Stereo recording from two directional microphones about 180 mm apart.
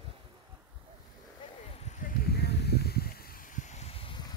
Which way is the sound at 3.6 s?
45° left (ahead or behind).